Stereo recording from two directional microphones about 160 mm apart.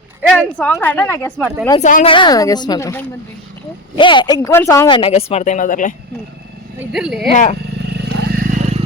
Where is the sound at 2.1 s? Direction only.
30° left (ahead or behind).